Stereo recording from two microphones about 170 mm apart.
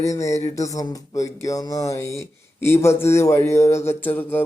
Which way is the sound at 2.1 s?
15° left (ahead or behind).